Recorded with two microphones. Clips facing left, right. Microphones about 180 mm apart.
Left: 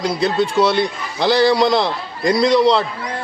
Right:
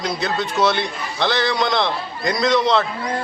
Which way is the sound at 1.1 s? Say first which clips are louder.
Left 6 dB; 35° left (ahead or behind).